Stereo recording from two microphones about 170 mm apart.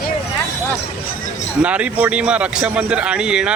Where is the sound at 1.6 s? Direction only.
10° right (ahead or behind).